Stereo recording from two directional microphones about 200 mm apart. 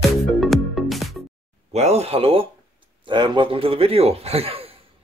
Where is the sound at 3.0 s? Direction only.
25° right (ahead or behind).